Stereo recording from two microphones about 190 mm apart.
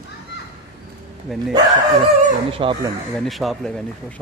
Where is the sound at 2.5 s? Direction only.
30° right (ahead or behind).